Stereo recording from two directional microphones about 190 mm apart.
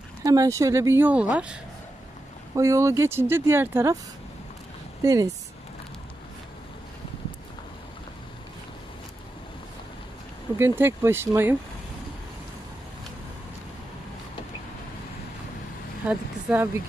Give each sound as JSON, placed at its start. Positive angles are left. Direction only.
{"t": 0.2, "sound": "speech", "side_deg": -20}
{"t": 2.5, "sound": "speech", "side_deg": -15}
{"t": 5.0, "sound": "speech", "side_deg": -20}
{"t": 10.6, "sound": "speech", "side_deg": -15}
{"t": 16.1, "sound": "speech", "side_deg": -5}